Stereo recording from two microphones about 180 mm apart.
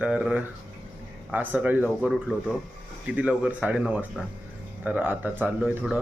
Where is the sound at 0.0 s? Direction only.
5° right (ahead or behind).